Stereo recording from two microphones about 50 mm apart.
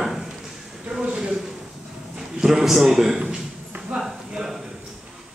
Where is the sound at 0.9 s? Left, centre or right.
Centre.